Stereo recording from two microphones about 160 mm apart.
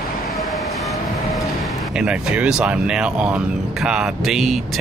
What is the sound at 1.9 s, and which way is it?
Speech, 5° right (ahead or behind).